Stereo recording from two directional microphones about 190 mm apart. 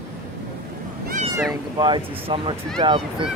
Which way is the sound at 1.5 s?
25° right (ahead or behind).